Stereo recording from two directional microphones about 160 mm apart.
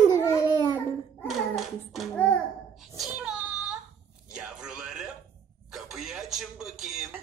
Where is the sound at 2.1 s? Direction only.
10° left (ahead or behind).